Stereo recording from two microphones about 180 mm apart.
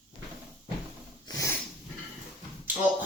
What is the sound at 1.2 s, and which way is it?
Snort, 15° left (ahead or behind).